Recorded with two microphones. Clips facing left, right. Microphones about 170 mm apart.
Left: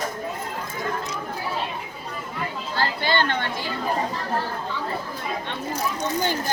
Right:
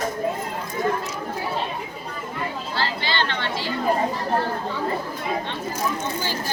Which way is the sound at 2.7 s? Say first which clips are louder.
Left 4 dB; 50° left (ahead or behind).